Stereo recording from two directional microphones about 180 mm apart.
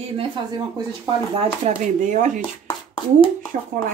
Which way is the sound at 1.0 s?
30° right (ahead or behind).